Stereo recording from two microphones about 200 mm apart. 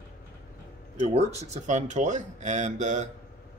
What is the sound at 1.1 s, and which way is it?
Speech, 35° right (ahead or behind).